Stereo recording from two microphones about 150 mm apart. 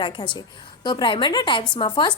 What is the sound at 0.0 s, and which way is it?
A woman's voice, 30° left (ahead or behind).